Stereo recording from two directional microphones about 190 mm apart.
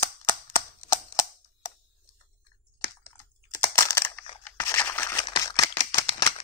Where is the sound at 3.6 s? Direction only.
15° left (ahead or behind).